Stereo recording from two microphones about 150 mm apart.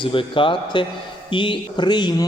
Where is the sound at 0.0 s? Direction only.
35° left (ahead or behind).